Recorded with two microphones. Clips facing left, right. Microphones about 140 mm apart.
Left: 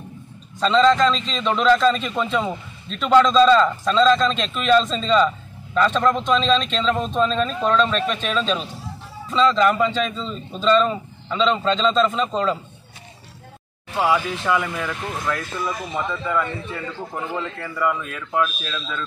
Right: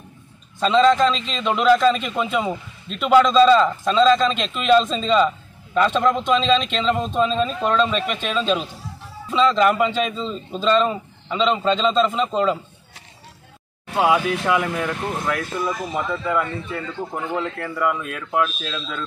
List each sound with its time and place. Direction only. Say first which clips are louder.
0.6 s a man's voice: even; 5° right (ahead or behind)
13.9 s a man's voice: right 2 dB; 15° right (ahead or behind)
17.6 s a man's voice: right 1 dB; 5° right (ahead or behind)